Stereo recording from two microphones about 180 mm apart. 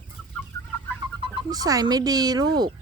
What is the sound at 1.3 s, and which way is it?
Speech, 20° right (ahead or behind).